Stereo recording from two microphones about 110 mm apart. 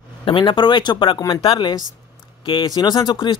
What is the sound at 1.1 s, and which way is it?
Speech, 35° left (ahead or behind).